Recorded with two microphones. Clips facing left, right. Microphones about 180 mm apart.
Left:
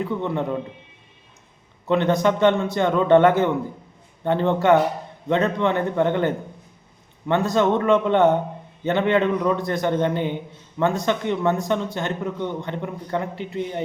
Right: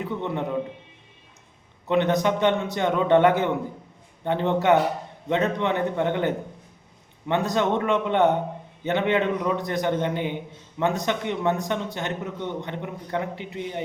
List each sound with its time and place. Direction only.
0.0 s a man's voice: 15° right (ahead or behind)
1.9 s a man's voice: 20° right (ahead or behind)